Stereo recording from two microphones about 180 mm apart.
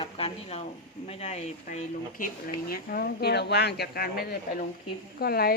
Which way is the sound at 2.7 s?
60° left (ahead or behind).